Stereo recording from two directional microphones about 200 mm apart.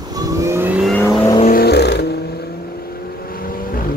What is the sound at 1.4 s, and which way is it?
Vehicle, 50° left (ahead or behind).